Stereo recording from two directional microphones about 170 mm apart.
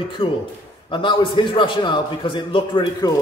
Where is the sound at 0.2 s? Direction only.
30° left (ahead or behind).